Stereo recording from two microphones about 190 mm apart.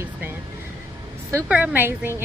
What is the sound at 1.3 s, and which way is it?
Speech, 10° right (ahead or behind).